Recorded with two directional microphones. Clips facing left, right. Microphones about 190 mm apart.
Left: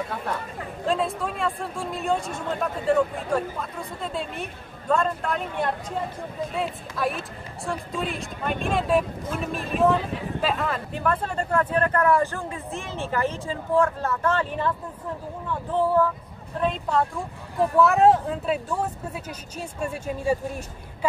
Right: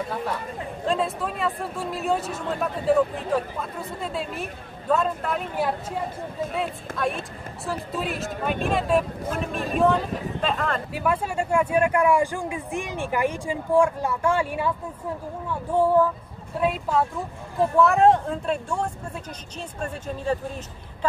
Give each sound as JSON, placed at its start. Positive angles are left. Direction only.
{"t": 0.8, "sound": "speech", "side_deg": 0}
{"t": 6.9, "sound": "a woman's voice", "side_deg": -50}
{"t": 7.6, "sound": "speech", "side_deg": -5}
{"t": 10.9, "sound": "speech", "side_deg": -10}
{"t": 15.7, "sound": "speech", "side_deg": -15}